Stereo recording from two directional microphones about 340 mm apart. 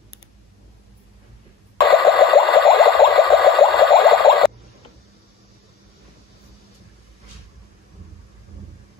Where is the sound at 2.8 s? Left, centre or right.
Centre.